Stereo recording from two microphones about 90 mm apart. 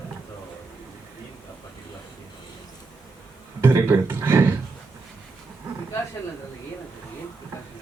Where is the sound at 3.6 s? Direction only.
25° right (ahead or behind).